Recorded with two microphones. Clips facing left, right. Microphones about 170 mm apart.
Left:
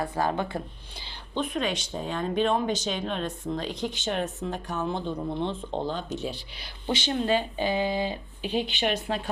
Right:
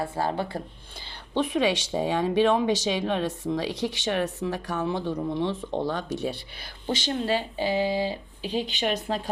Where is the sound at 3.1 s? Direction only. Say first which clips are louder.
Right 4 dB; 75° right (ahead or behind).